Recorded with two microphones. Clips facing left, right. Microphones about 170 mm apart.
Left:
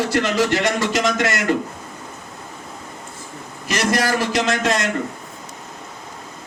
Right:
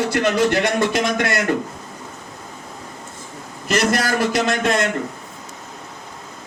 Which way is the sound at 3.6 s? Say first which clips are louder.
Right 1 dB; 50° right (ahead or behind).